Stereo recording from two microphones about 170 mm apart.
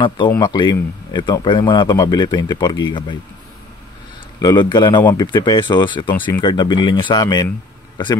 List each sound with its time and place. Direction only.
0.0 s speech: 25° left (ahead or behind)
4.4 s speech: 25° left (ahead or behind)
6.1 s speech: 10° left (ahead or behind)
6.4 s speech: 25° left (ahead or behind)